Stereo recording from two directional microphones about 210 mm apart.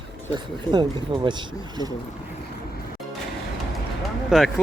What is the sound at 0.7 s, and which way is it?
Speech, 20° right (ahead or behind).